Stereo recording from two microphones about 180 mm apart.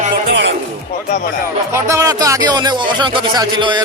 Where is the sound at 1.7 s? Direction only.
15° right (ahead or behind).